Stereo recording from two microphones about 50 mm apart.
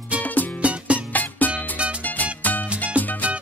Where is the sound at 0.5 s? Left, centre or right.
Right.